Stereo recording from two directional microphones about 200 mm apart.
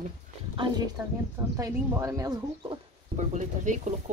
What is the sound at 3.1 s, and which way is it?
Speech, 40° right (ahead or behind).